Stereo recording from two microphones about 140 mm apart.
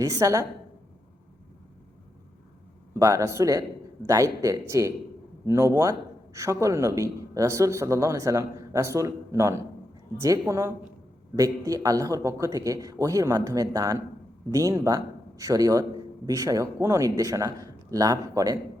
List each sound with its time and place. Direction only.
0.0 s a man's voice: 25° right (ahead or behind)
3.0 s a man's voice: 25° right (ahead or behind)